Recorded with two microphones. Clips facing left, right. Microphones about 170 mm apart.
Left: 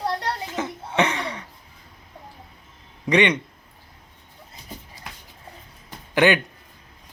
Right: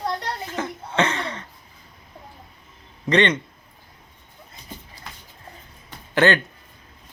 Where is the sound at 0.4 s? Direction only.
15° left (ahead or behind).